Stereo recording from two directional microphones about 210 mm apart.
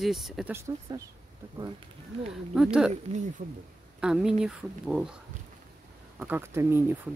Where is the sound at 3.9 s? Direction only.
5° right (ahead or behind).